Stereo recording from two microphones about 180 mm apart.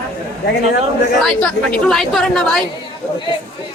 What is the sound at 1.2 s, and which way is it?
A woman's voice, centre (ahead or behind).